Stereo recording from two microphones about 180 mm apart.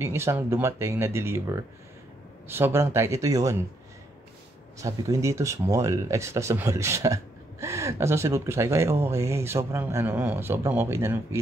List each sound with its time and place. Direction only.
0.0 s speech: 15° right (ahead or behind)
4.7 s speech: 15° right (ahead or behind)